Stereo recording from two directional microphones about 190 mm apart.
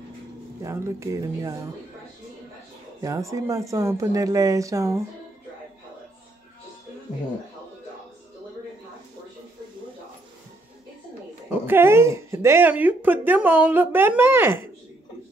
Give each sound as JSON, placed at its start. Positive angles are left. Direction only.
{"t": 0.6, "sound": "speech", "side_deg": -15}
{"t": 3.0, "sound": "speech", "side_deg": -15}
{"t": 11.6, "sound": "speech", "side_deg": -10}